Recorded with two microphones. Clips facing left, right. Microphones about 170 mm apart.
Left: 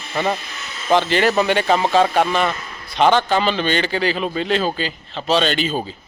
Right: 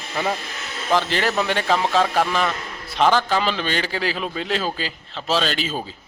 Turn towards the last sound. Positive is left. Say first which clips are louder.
# left 4 dB
turn(degrees=0)  # may be behind; listen again after turning